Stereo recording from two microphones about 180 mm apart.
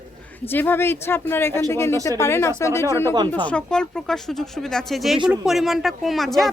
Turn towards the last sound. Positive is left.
turn(degrees=0)  # may be behind; listen again after turning